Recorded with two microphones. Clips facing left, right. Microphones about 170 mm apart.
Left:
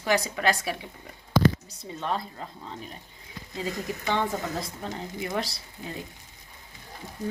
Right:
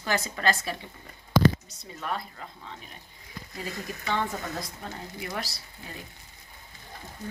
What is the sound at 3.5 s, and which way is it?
A woman's voice, 20° left (ahead or behind).